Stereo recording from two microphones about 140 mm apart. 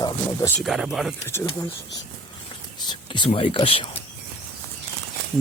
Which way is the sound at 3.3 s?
40° left (ahead or behind).